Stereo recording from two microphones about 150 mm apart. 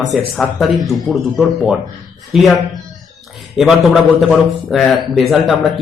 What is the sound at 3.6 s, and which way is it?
A man's voice, centre (ahead or behind).